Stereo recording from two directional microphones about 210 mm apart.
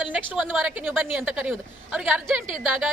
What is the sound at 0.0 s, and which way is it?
A woman's voice, 5° right (ahead or behind).